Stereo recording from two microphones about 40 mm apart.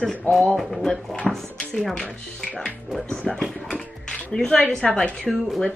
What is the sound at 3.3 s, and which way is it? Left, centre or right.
Speech, centre.